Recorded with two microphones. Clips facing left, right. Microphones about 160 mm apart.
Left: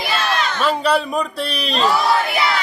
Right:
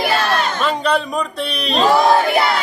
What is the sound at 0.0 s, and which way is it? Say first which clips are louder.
Crowd: right 4 dB; 55° right (ahead or behind).